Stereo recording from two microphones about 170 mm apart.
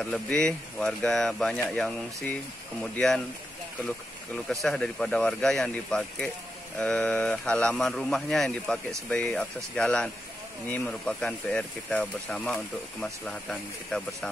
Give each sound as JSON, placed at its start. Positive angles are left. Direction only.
{"t": 0.0, "sound": "speech", "side_deg": 5}
{"t": 2.8, "sound": "speech", "side_deg": 0}
{"t": 4.5, "sound": "speech", "side_deg": 5}